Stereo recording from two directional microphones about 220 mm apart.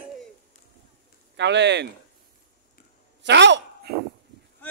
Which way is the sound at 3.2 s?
55° right (ahead or behind).